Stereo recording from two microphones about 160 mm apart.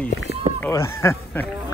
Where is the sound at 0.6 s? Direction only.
20° left (ahead or behind).